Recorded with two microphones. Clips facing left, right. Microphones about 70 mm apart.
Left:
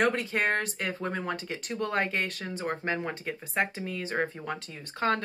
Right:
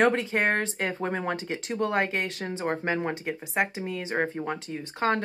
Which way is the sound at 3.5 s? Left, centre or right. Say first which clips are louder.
Right 2 dB; centre.